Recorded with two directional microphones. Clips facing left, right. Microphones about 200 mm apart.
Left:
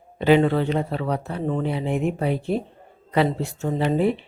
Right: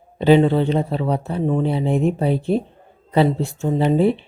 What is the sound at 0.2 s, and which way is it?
A man's voice, 30° right (ahead or behind).